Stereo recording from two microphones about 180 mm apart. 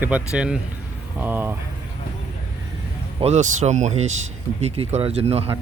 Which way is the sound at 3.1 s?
40° right (ahead or behind).